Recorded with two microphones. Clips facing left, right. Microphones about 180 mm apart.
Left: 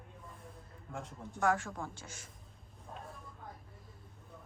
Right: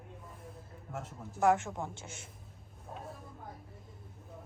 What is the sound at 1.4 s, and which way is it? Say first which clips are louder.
Speech: right 4 dB; 20° right (ahead or behind).